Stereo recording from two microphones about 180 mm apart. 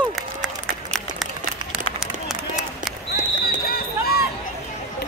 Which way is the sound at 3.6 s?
55° left (ahead or behind).